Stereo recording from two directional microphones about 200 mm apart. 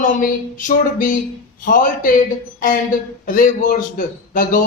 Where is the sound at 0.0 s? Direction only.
40° left (ahead or behind).